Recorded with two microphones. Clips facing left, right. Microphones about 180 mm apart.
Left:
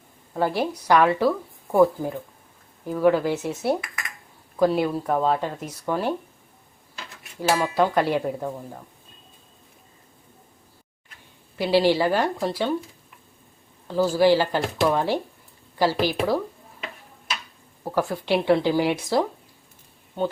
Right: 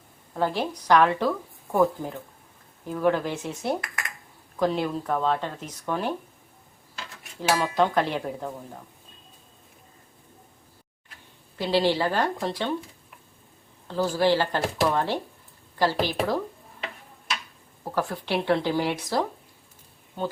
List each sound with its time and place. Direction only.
0.3 s speech: 10° left (ahead or behind)
7.5 s speech: 10° left (ahead or behind)
11.5 s speech: 10° left (ahead or behind)
13.8 s speech: 10° left (ahead or behind)
17.9 s speech: 10° left (ahead or behind)